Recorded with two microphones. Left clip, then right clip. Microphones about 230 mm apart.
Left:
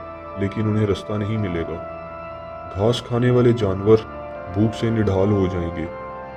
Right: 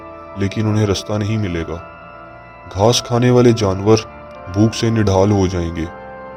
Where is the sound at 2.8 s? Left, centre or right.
Right.